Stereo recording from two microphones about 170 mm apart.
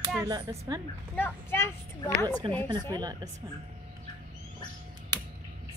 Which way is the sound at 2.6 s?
25° right (ahead or behind).